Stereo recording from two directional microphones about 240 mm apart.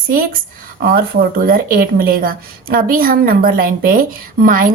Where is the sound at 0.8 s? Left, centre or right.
Right.